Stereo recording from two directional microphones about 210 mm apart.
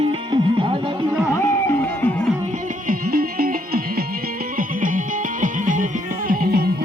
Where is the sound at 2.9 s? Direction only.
45° right (ahead or behind).